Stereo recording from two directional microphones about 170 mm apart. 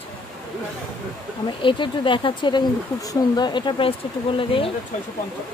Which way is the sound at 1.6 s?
30° left (ahead or behind).